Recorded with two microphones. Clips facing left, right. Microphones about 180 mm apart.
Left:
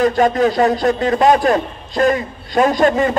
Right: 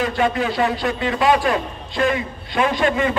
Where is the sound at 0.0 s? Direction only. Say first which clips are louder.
Left 6 dB; 40° left (ahead or behind).